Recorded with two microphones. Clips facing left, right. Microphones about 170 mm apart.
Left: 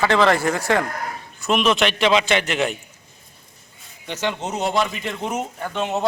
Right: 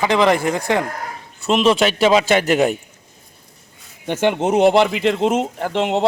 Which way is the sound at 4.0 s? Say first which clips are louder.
Right 8 dB; 55° right (ahead or behind).